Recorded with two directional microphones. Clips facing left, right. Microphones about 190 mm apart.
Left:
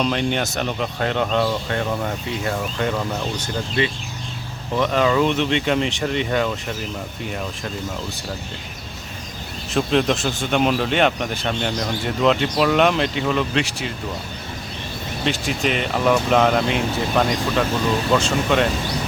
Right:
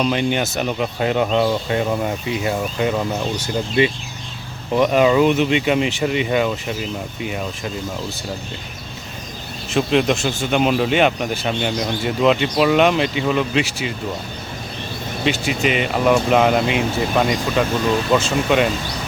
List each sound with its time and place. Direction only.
0.0 s speech: 5° right (ahead or behind)
9.7 s speech: 5° right (ahead or behind)
15.2 s speech: 5° right (ahead or behind)